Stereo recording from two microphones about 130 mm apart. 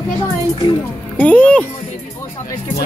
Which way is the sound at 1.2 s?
10° left (ahead or behind).